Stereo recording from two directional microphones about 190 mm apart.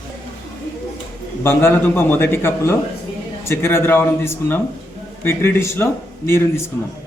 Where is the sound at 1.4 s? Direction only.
15° left (ahead or behind).